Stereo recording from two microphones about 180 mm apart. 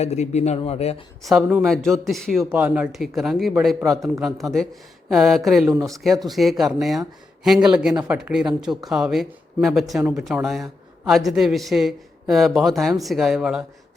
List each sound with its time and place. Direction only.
0.0 s speech: 40° left (ahead or behind)
1.2 s speech: centre (ahead or behind)
2.4 s speech: 10° right (ahead or behind)
5.7 s speech: 20° right (ahead or behind)
6.0 s speech: centre (ahead or behind)